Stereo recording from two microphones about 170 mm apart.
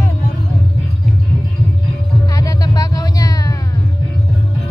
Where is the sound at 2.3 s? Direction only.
20° left (ahead or behind).